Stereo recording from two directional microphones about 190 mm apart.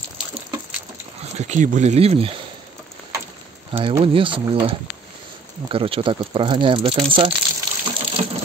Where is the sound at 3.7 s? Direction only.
25° right (ahead or behind).